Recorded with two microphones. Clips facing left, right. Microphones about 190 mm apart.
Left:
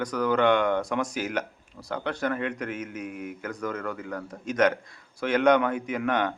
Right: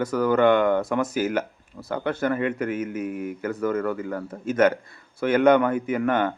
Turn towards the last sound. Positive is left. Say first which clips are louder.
# right 4 dB
turn(degrees=0)  # may be behind; listen again after turning